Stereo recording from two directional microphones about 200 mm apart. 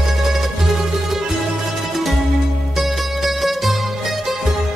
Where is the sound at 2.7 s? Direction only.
Centre (ahead or behind).